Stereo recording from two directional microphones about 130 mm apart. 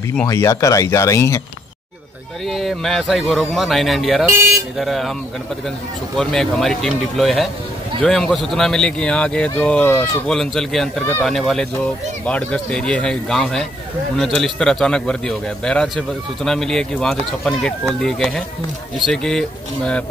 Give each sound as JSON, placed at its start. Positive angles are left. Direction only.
{"t": 0.3, "sound": "speech", "side_deg": 25}
{"t": 2.4, "sound": "a man's voice", "side_deg": 0}
{"t": 6.1, "sound": "a man's voice", "side_deg": 5}
{"t": 10.2, "sound": "a man's voice", "side_deg": 5}
{"t": 11.0, "sound": "speech", "side_deg": 15}
{"t": 11.2, "sound": "a man's voice", "side_deg": 0}